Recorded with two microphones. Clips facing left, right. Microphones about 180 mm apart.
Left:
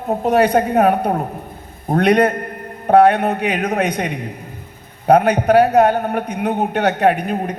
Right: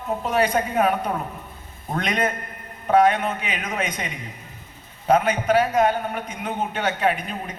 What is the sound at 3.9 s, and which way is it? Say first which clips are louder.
Speech: left 9 dB; 55° left (ahead or behind).